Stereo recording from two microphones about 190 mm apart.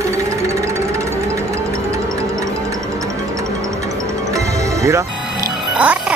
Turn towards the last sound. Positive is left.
turn(degrees=-5)  # may be behind; listen again after turning